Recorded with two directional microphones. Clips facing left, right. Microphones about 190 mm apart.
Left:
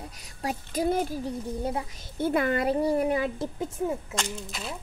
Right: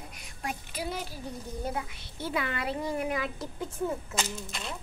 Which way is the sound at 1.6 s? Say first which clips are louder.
Left 4 dB; 35° left (ahead or behind).